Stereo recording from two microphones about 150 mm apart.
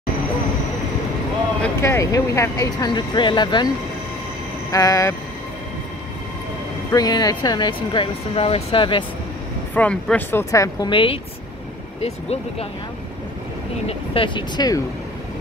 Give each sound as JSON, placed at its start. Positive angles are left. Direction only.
{"t": 1.6, "sound": "speech", "side_deg": 20}
{"t": 4.6, "sound": "vehicle", "side_deg": 20}
{"t": 6.9, "sound": "speech", "side_deg": 25}
{"t": 9.8, "sound": "speech", "side_deg": 10}
{"t": 10.9, "sound": "speech", "side_deg": 35}
{"t": 13.8, "sound": "speech", "side_deg": 35}